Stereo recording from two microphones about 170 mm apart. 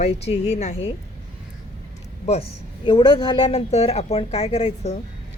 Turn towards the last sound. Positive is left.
turn(degrees=35)  # may be behind; listen again after turning